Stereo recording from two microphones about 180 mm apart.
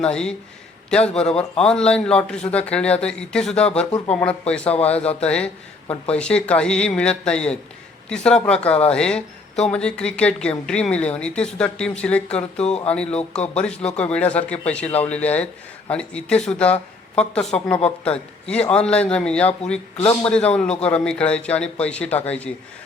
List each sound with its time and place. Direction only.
0.0 s speech: 5° left (ahead or behind)
4.7 s speech: 35° left (ahead or behind)
5.0 s speech: 5° left (ahead or behind)
12.5 s speech: 35° left (ahead or behind)
12.9 s speech: 5° left (ahead or behind)
20.0 s a man's voice: 25° left (ahead or behind)
20.3 s speech: 5° left (ahead or behind)